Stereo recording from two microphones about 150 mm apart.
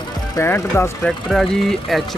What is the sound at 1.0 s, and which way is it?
Speech, 5° left (ahead or behind).